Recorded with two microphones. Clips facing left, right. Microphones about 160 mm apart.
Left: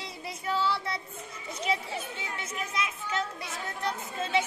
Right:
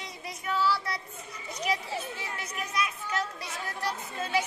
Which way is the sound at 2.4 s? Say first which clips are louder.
Right 1 dB; 25° left (ahead or behind).